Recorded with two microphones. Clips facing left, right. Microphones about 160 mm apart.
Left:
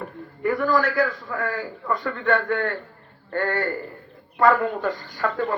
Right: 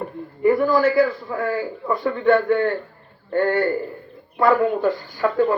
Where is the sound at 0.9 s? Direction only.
30° right (ahead or behind).